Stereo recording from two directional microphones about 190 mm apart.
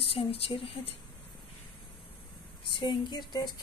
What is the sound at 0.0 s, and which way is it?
Speech, 30° left (ahead or behind).